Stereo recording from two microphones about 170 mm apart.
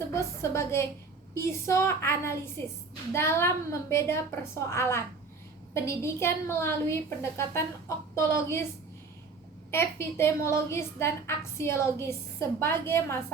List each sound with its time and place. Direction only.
0.1 s a woman's voice: 15° left (ahead or behind)
9.7 s a woman's voice: 15° left (ahead or behind)